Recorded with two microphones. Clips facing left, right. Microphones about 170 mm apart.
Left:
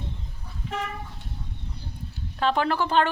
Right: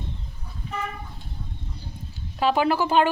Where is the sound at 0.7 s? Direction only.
90° left.